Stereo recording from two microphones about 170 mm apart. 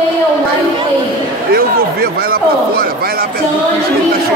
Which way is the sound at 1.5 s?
65° right (ahead or behind).